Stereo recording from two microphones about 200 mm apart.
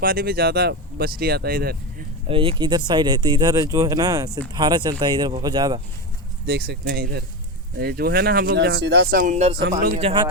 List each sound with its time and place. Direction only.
0.0 s speech: 45° right (ahead or behind)
2.2 s speech: 25° right (ahead or behind)
6.4 s speech: 55° right (ahead or behind); by 10.2 s 30° right (ahead or behind)